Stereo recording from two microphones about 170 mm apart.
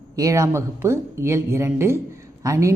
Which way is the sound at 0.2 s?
20° right (ahead or behind).